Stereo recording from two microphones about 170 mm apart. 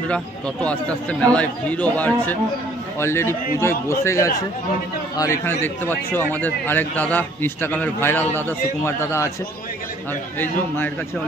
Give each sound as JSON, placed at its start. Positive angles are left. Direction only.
{"t": 0.1, "sound": "a man's voice", "side_deg": 5}